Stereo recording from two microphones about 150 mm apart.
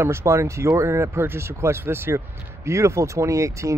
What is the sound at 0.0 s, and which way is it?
Speech, 20° right (ahead or behind).